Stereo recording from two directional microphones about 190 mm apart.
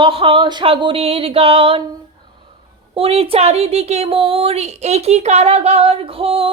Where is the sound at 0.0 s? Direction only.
30° right (ahead or behind).